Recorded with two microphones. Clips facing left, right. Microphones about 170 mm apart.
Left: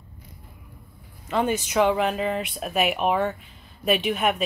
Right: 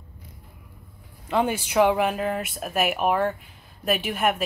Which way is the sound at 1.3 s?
10° right (ahead or behind).